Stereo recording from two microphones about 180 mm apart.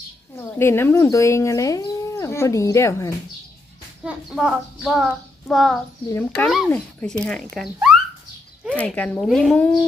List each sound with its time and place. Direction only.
0.3 s speech: 15° left (ahead or behind)
4.0 s a child's voice: 5° right (ahead or behind)
8.7 s speech: 10° left (ahead or behind)